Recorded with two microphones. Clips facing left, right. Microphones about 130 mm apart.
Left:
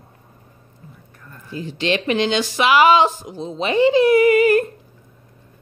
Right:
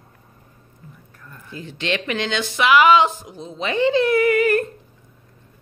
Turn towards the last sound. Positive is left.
turn(degrees=20)  # may be behind; listen again after turning